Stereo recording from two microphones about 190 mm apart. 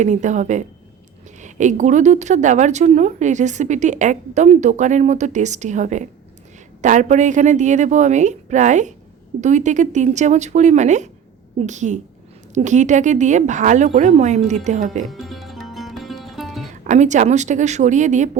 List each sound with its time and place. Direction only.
0.0 s a woman's voice: 40° right (ahead or behind)
15.0 s music: centre (ahead or behind)
16.8 s a woman's voice: 40° right (ahead or behind)